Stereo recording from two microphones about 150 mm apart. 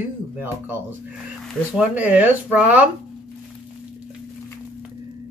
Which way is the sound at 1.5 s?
10° right (ahead or behind).